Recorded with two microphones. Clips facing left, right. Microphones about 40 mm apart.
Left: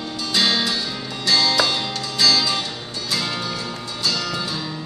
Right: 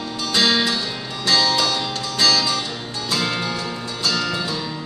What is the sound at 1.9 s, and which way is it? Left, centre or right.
Music, right.